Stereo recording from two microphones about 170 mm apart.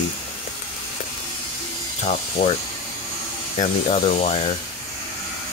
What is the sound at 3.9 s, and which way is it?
Speech, 40° left (ahead or behind).